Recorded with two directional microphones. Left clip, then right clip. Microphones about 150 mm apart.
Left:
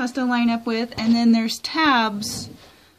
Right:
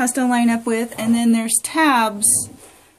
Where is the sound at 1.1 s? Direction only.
35° left (ahead or behind).